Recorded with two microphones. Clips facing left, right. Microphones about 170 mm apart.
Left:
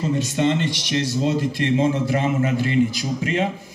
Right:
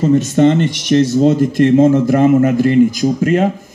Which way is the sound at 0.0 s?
45° right (ahead or behind).